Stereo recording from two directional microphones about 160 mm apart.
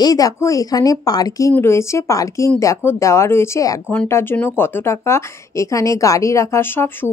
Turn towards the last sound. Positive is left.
turn(degrees=15)  # may be behind; listen again after turning